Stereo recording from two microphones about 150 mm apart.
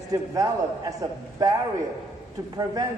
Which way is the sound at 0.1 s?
20° right (ahead or behind).